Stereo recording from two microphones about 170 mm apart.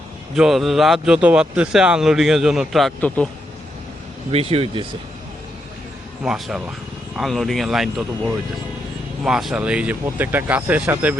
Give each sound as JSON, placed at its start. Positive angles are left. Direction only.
{"t": 0.3, "sound": "speech", "side_deg": 0}
{"t": 4.3, "sound": "speech", "side_deg": -35}
{"t": 6.2, "sound": "speech", "side_deg": -5}